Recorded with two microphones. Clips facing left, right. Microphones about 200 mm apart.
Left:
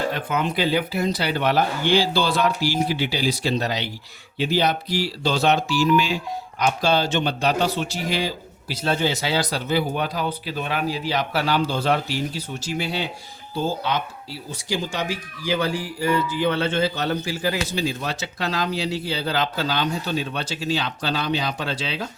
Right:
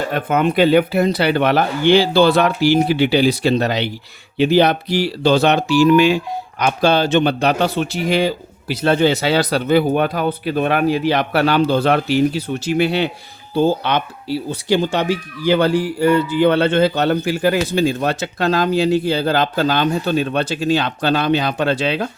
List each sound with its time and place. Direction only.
0.1 s speech: 55° right (ahead or behind)